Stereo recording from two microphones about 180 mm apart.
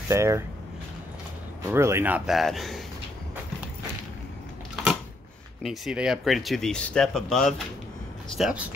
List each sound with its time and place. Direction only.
0.1 s speech: 15° right (ahead or behind)
1.7 s speech: 15° right (ahead or behind)
5.6 s speech: centre (ahead or behind)